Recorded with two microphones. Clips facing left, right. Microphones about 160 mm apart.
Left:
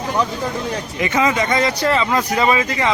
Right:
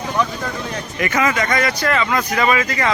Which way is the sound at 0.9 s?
20° left (ahead or behind).